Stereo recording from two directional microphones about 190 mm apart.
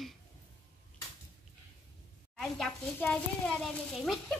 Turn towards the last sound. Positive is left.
turn(degrees=0)  # may be behind; listen again after turning